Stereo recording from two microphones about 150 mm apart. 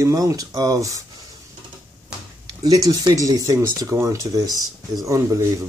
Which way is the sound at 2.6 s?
25° right (ahead or behind).